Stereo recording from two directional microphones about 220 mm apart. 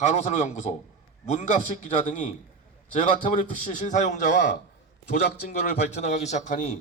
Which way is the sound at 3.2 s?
30° left (ahead or behind).